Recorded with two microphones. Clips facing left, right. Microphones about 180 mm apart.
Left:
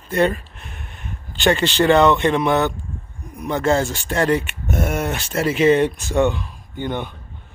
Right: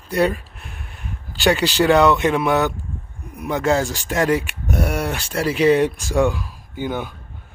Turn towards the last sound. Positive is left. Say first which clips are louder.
# even
turn(degrees=-5)  # may be behind; listen again after turning